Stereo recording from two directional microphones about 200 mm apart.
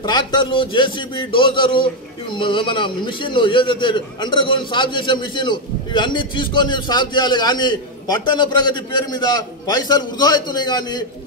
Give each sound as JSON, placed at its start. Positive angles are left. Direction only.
{"t": 0.0, "sound": "a man's voice", "side_deg": 20}